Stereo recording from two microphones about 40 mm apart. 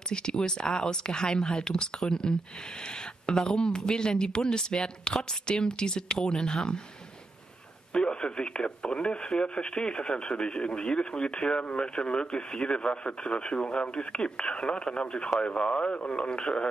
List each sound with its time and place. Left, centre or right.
0.1 s speech: left
3.4 s speech: centre
7.9 s speech: left